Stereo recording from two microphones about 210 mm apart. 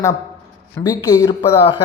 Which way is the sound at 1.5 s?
25° left (ahead or behind).